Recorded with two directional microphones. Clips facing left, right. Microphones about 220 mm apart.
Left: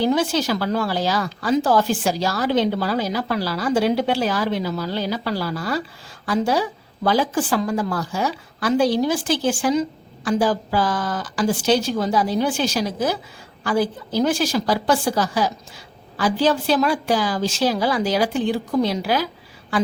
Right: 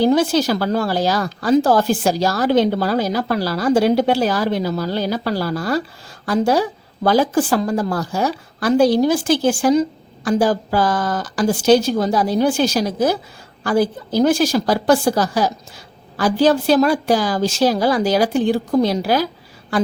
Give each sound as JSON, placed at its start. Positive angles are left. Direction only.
{"t": 0.0, "sound": "speech", "side_deg": -40}